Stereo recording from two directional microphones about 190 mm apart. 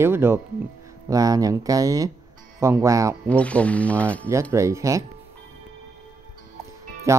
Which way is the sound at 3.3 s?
5° left (ahead or behind).